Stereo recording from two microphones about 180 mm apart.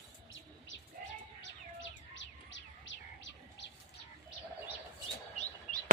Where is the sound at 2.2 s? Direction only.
90° left.